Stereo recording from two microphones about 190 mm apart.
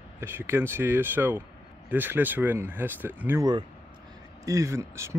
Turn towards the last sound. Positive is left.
turn(degrees=-15)  # may be behind; listen again after turning